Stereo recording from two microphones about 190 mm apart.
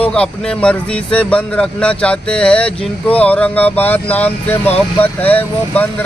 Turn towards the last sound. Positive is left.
turn(degrees=10)  # may be behind; listen again after turning